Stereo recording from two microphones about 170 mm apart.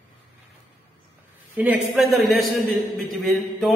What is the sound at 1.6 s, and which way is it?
A man's voice, 5° right (ahead or behind).